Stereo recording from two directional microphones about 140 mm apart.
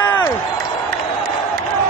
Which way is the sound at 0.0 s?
15° left (ahead or behind).